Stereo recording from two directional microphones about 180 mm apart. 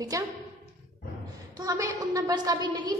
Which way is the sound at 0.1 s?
20° right (ahead or behind).